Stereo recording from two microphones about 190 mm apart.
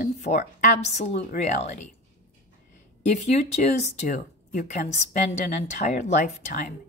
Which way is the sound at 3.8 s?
40° left (ahead or behind).